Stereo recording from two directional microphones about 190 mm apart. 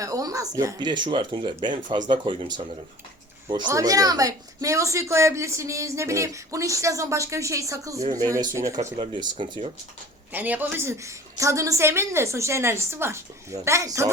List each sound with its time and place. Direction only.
0.0 s speech: 20° right (ahead or behind)
10.3 s speech: 10° right (ahead or behind)